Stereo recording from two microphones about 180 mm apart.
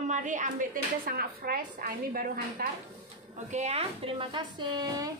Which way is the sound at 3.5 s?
40° right (ahead or behind).